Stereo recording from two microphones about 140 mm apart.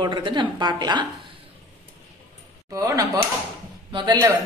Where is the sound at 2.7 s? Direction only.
25° right (ahead or behind).